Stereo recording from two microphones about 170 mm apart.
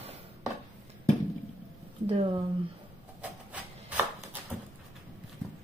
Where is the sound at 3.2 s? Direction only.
10° right (ahead or behind).